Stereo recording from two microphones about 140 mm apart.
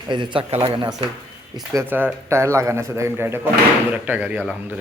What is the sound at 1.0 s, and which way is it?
Speech, 45° right (ahead or behind).